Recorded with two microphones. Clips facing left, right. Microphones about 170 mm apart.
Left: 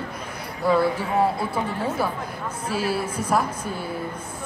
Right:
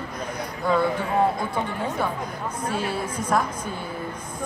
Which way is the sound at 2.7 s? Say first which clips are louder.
Left 5 dB; 5° left (ahead or behind).